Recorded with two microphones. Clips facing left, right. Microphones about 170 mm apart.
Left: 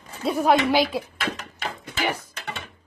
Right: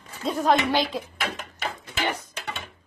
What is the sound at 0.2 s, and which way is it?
Speech, 10° left (ahead or behind).